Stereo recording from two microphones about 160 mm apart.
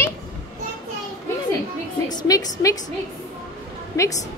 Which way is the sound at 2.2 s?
20° left (ahead or behind).